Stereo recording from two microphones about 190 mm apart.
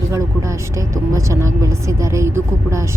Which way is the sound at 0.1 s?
15° right (ahead or behind).